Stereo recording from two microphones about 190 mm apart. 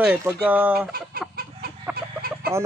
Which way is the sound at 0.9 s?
50° right (ahead or behind).